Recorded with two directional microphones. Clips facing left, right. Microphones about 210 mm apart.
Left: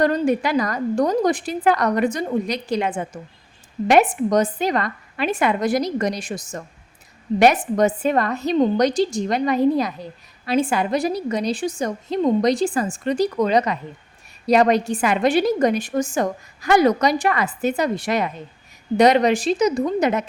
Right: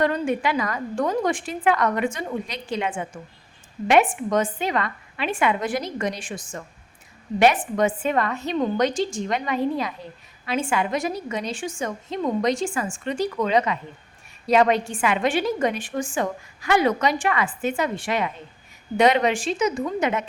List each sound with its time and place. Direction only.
0.0 s a woman's voice: 40° left (ahead or behind)